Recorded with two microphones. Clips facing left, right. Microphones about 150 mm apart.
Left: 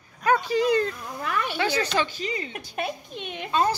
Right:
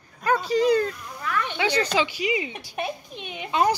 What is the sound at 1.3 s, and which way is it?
Speech, 10° left (ahead or behind).